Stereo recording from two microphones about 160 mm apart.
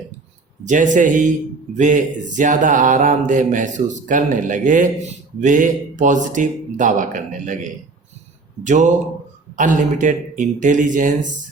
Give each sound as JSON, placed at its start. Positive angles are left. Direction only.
{"t": 0.6, "sound": "speech", "side_deg": -50}